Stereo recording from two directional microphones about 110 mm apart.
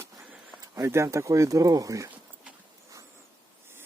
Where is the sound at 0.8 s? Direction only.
25° right (ahead or behind).